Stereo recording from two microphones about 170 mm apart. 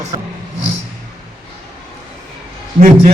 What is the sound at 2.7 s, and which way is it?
Speech, 45° right (ahead or behind).